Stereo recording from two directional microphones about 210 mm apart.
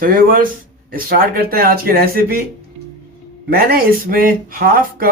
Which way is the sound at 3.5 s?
45° right (ahead or behind).